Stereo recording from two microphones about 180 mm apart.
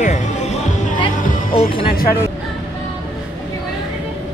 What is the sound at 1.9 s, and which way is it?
Speech, 55° left (ahead or behind).